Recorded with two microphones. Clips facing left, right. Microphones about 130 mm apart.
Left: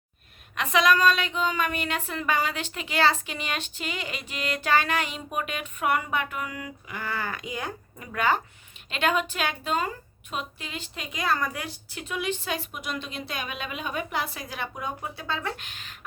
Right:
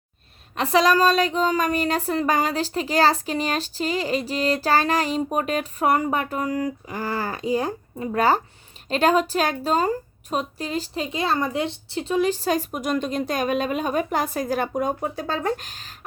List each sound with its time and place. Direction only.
0.5 s speech: 35° right (ahead or behind)